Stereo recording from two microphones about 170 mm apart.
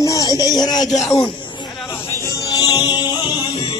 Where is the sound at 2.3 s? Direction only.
25° left (ahead or behind).